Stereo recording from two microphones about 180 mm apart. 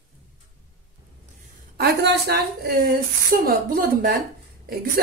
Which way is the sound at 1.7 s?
65° right (ahead or behind).